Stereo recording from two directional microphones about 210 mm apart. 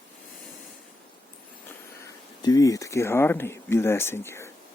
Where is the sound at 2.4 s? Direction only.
15° left (ahead or behind).